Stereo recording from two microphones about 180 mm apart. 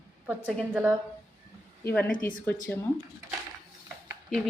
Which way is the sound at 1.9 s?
10° left (ahead or behind).